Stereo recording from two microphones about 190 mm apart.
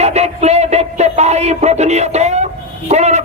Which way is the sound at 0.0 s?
35° right (ahead or behind).